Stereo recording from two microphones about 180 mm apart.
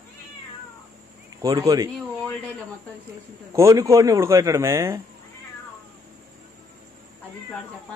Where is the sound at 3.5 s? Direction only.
15° right (ahead or behind).